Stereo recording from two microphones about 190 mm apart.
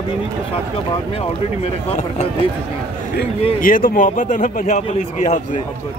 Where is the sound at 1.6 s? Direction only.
35° left (ahead or behind).